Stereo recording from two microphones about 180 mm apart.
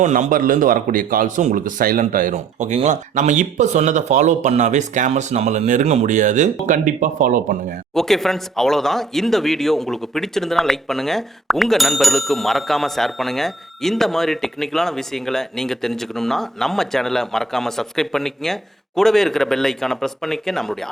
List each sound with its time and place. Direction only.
0.0 s a man's voice: 40° right (ahead or behind)
7.9 s speech: centre (ahead or behind)